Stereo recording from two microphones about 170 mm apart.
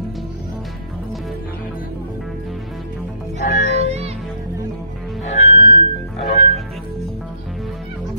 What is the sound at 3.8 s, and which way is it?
Music, 40° right (ahead or behind).